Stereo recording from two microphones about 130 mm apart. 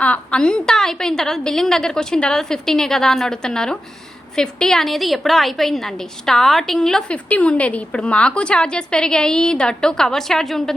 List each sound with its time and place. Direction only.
0.0 s a woman's voice: 10° left (ahead or behind)